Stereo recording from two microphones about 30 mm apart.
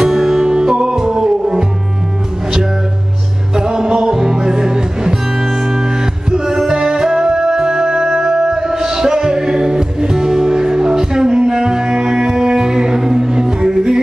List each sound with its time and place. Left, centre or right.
0.0 s music: centre
3.5 s music: right